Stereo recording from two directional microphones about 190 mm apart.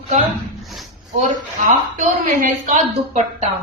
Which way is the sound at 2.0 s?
45° right (ahead or behind).